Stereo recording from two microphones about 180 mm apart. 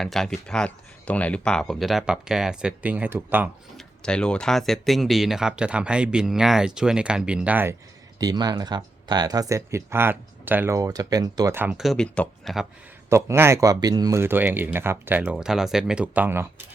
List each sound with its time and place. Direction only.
0.0 s speech: centre (ahead or behind)
3.8 s speech: 5° left (ahead or behind); by 7.8 s 10° right (ahead or behind)
8.2 s speech: 20° right (ahead or behind); by 12.6 s 5° left (ahead or behind)
13.1 s speech: 15° right (ahead or behind)